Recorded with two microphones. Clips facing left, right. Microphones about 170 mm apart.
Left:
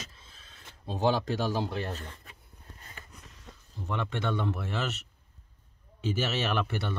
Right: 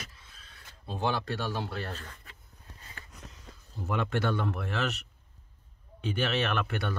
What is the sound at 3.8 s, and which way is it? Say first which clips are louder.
Speech: right 3 dB; 5° right (ahead or behind).